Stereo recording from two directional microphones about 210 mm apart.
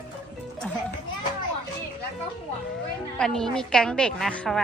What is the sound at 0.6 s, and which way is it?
Children playing, 5° left (ahead or behind).